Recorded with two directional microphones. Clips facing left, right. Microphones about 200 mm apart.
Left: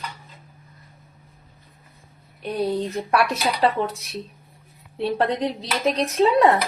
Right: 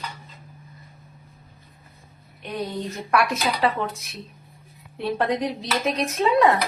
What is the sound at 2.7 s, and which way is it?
Speech, 30° left (ahead or behind).